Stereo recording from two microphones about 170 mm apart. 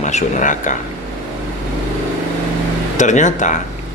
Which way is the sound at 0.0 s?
45° left (ahead or behind).